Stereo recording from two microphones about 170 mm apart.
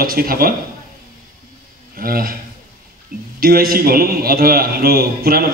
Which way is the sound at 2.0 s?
60° right (ahead or behind).